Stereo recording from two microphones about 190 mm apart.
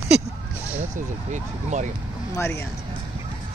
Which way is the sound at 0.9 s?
40° right (ahead or behind).